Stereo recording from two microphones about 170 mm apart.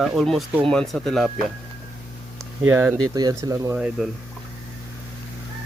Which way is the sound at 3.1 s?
25° right (ahead or behind).